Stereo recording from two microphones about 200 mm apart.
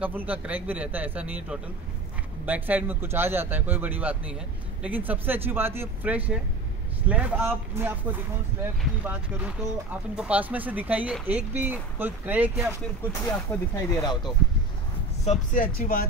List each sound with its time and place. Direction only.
0.0 s a man's voice: 10° right (ahead or behind)
13.2 s speech: 15° left (ahead or behind)
15.2 s speech: 40° left (ahead or behind)